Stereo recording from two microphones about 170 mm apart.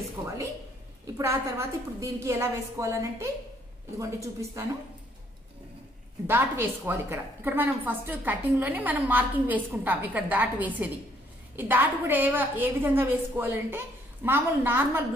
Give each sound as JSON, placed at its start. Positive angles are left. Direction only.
{"t": 0.2, "sound": "a woman's voice", "side_deg": -15}
{"t": 6.2, "sound": "a woman's voice", "side_deg": -10}